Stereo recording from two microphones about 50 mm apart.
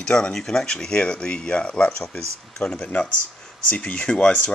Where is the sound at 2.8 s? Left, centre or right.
Left.